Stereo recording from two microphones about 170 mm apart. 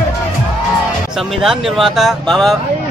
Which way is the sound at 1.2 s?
Centre (ahead or behind).